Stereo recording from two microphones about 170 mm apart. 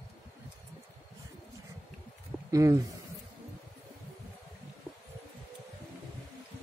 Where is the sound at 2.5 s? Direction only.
20° right (ahead or behind).